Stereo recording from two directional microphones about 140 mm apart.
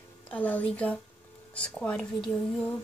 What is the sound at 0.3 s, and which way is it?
A woman's voice, 10° left (ahead or behind).